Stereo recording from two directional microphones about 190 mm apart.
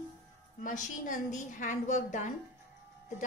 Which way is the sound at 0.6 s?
45° left (ahead or behind).